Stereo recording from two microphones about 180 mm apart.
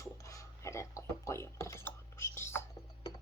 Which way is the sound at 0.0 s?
20° left (ahead or behind).